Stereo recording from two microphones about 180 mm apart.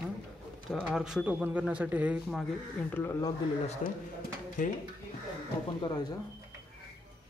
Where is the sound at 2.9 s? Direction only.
15° left (ahead or behind).